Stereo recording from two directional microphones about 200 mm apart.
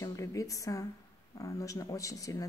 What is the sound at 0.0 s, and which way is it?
Speech, 15° left (ahead or behind).